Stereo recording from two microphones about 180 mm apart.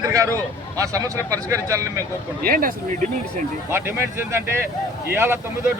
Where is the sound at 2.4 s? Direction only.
55° right (ahead or behind).